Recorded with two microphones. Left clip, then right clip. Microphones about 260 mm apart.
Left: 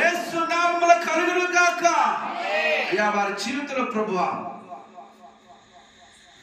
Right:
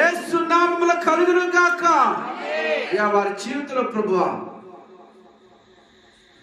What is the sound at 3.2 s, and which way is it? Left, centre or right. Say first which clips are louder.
A man's voice: right 2 dB; right.